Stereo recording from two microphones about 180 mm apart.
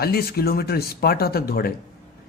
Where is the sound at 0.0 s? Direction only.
60° left (ahead or behind).